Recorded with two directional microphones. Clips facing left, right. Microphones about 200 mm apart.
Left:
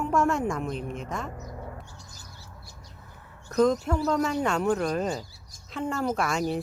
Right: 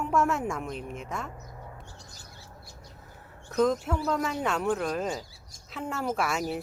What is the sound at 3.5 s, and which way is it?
Speech, centre (ahead or behind).